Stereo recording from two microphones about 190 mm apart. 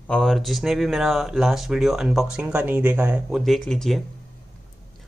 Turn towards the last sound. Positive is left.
turn(degrees=0)  # may be behind; listen again after turning